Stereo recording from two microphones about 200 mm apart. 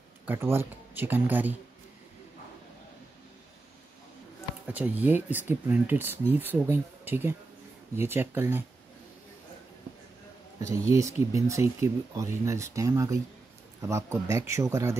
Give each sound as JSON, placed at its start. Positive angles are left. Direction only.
{"t": 0.3, "sound": "speech", "side_deg": -10}
{"t": 4.6, "sound": "speech", "side_deg": -5}
{"t": 10.7, "sound": "speech", "side_deg": -15}